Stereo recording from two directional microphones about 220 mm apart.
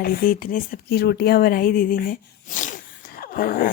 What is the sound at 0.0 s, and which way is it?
Speech, 40° left (ahead or behind).